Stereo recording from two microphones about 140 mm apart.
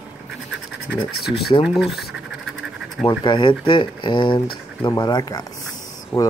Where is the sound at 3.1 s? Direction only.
35° left (ahead or behind).